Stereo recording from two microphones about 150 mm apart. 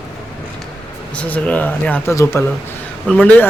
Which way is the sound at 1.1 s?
10° left (ahead or behind).